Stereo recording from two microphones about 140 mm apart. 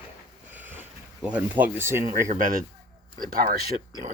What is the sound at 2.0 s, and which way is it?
Speech, 70° right (ahead or behind).